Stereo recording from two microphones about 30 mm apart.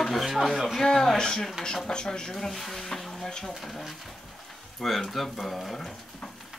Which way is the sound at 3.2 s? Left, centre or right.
Centre.